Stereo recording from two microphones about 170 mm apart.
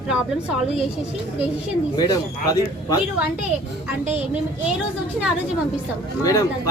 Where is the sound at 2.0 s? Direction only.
20° left (ahead or behind).